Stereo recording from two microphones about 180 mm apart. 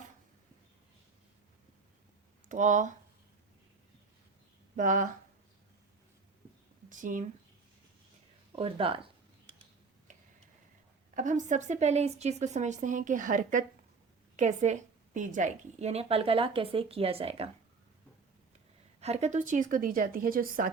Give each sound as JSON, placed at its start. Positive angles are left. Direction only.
{"t": 2.5, "sound": "a woman's voice", "side_deg": -45}
{"t": 4.8, "sound": "a woman's voice", "side_deg": -45}
{"t": 6.9, "sound": "a woman's voice", "side_deg": -45}
{"t": 8.5, "sound": "a woman's voice", "side_deg": -30}
{"t": 10.1, "sound": "a sound", "side_deg": -40}
{"t": 11.1, "sound": "a woman's voice", "side_deg": -45}
{"t": 18.9, "sound": "a woman's voice", "side_deg": -35}